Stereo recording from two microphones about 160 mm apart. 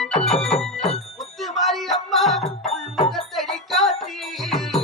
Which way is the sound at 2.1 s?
Centre (ahead or behind).